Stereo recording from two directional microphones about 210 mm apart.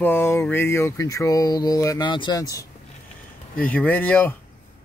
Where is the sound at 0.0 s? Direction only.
10° left (ahead or behind).